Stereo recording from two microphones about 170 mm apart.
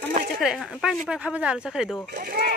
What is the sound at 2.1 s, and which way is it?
Speech, 60° right (ahead or behind).